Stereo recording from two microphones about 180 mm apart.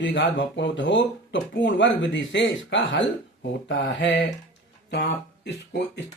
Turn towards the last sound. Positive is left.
turn(degrees=65)  # may be behind; listen again after turning